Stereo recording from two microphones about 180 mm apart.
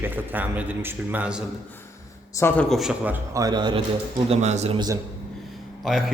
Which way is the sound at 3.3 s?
20° right (ahead or behind).